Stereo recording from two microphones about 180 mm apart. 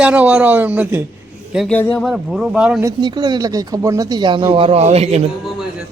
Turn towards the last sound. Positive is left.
turn(degrees=-35)  # may be behind; listen again after turning